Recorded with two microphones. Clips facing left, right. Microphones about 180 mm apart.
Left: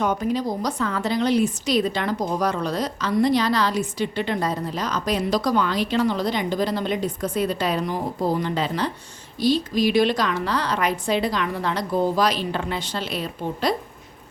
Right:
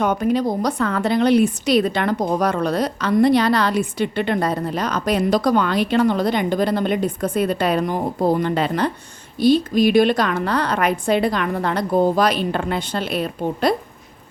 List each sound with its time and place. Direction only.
0.0 s a woman's voice: 60° right (ahead or behind)